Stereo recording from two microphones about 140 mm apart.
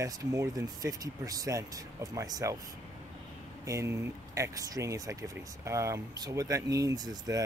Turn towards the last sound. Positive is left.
turn(degrees=-25)  # may be behind; listen again after turning